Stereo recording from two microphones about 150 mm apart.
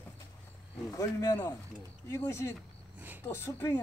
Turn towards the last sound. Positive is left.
turn(degrees=15)  # may be behind; listen again after turning